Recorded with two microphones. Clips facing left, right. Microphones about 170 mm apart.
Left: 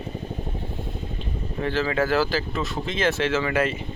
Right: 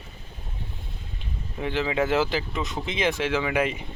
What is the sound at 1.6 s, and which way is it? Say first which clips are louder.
Speech: left 1 dB; 15° right (ahead or behind).